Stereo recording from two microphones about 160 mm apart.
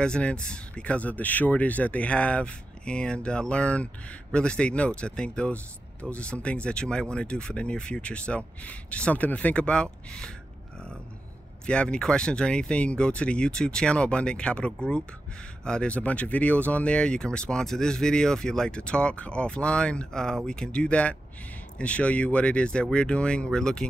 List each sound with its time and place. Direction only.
0.0 s speech: 5° left (ahead or behind)
11.6 s speech: 5° left (ahead or behind)